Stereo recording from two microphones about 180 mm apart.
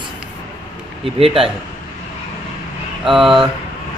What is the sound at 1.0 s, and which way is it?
Speech, 30° right (ahead or behind).